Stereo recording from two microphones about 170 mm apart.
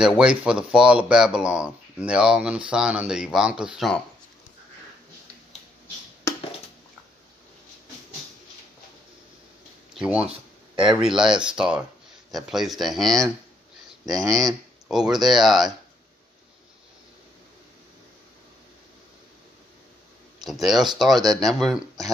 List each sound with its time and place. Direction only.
0.2 s speech: 5° right (ahead or behind)
9.9 s speech: 5° right (ahead or behind)
14.0 s speech: 20° right (ahead or behind)
14.9 s speech: 5° right (ahead or behind)
20.4 s speech: centre (ahead or behind)